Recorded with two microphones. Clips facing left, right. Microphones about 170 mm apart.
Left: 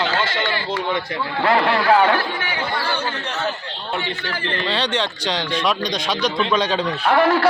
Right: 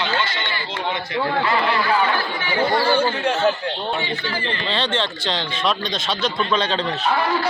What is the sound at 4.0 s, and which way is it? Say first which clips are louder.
Speech: right 1 dB; 60° left (ahead or behind).